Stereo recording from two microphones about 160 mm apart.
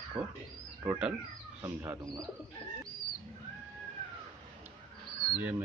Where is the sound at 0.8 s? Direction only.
5° right (ahead or behind).